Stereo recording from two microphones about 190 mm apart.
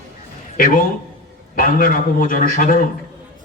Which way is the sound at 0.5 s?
50° left (ahead or behind).